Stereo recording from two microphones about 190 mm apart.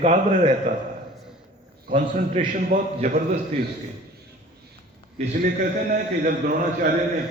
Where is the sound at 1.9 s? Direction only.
30° right (ahead or behind).